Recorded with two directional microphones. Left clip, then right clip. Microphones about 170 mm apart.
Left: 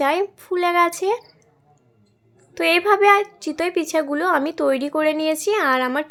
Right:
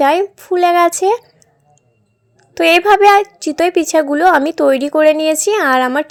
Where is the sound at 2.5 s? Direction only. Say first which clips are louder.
Right 7 dB; 35° right (ahead or behind).